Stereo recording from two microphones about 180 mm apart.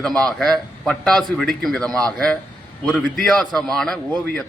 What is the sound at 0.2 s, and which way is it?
A man's voice, centre (ahead or behind).